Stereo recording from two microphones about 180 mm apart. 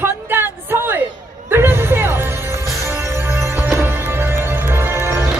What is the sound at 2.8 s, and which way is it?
Music, 15° right (ahead or behind).